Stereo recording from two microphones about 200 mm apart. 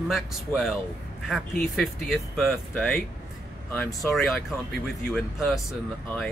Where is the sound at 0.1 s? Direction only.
Centre (ahead or behind).